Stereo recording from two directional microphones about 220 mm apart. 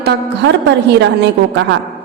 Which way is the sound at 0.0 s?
50° right (ahead or behind).